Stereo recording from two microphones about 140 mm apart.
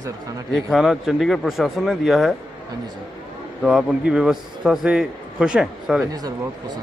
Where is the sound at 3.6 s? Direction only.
5° right (ahead or behind).